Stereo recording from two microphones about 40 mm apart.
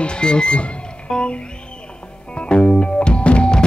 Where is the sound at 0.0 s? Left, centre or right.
Left.